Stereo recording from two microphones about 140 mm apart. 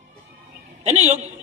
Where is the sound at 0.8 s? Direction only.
55° right (ahead or behind).